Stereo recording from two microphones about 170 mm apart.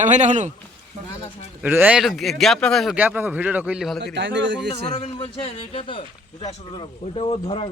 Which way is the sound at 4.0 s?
90° right.